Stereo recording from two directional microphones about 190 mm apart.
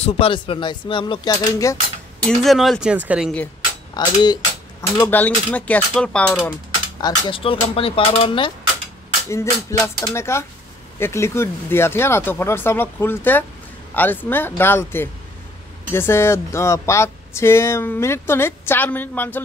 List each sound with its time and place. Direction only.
0.0 s speech: 30° left (ahead or behind)
2.2 s speech: centre (ahead or behind)
3.9 s speech: 20° left (ahead or behind); by 6.5 s 5° left (ahead or behind)
7.0 s speech: 25° left (ahead or behind)
9.3 s speech: 15° left (ahead or behind)